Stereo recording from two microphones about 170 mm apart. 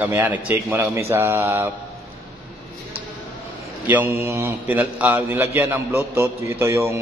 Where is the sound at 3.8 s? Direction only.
10° right (ahead or behind).